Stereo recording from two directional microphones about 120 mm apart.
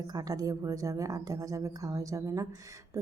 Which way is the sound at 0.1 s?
30° right (ahead or behind).